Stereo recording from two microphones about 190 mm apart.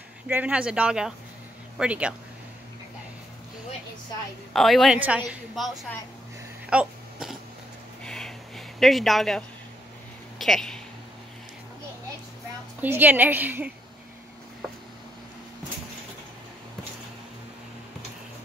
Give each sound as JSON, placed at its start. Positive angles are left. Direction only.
{"t": 0.3, "sound": "speech", "side_deg": -5}
{"t": 4.6, "sound": "speech", "side_deg": 0}
{"t": 6.7, "sound": "sneeze", "side_deg": -5}
{"t": 8.0, "sound": "a sound", "side_deg": 5}
{"t": 10.4, "sound": "speech", "side_deg": 0}
{"t": 12.8, "sound": "a woman's voice", "side_deg": -10}